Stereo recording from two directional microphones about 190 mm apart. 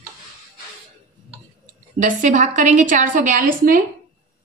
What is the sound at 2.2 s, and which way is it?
A woman's voice, 40° right (ahead or behind).